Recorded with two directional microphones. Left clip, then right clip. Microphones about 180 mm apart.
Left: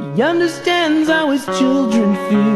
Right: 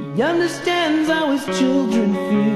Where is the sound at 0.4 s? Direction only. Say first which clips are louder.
Left 3 dB; 15° left (ahead or behind).